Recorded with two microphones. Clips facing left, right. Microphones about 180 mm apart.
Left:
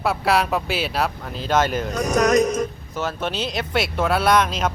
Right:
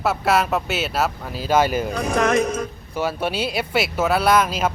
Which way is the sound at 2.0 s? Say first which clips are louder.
Left 3 dB; 40° left (ahead or behind).